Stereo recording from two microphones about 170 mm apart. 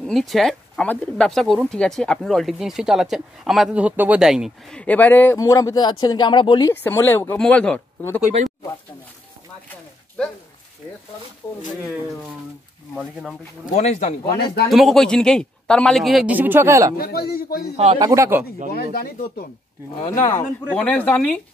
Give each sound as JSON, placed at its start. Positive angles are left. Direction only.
{"t": 0.0, "sound": "speech", "side_deg": 0}
{"t": 6.7, "sound": "speech", "side_deg": 15}
{"t": 7.3, "sound": "speech", "side_deg": 5}
{"t": 12.9, "sound": "speech", "side_deg": 0}
{"t": 13.7, "sound": "speech", "side_deg": 40}
{"t": 14.4, "sound": "speech", "side_deg": 70}
{"t": 14.7, "sound": "speech", "side_deg": 0}
{"t": 16.9, "sound": "speech", "side_deg": 65}
{"t": 17.9, "sound": "speech", "side_deg": -20}
{"t": 18.7, "sound": "speech", "side_deg": 65}
{"t": 20.1, "sound": "speech", "side_deg": 20}
{"t": 20.7, "sound": "speech", "side_deg": 10}